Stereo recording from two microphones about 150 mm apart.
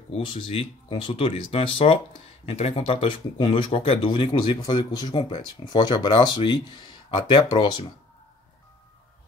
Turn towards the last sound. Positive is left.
turn(degrees=30)  # may be behind; listen again after turning